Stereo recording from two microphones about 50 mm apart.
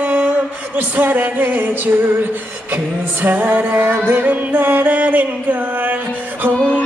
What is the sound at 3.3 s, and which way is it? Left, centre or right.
Music, right.